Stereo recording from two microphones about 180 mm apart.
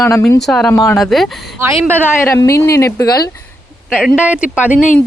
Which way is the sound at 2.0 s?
15° left (ahead or behind).